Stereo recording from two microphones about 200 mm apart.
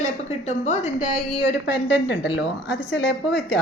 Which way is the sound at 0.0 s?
35° left (ahead or behind).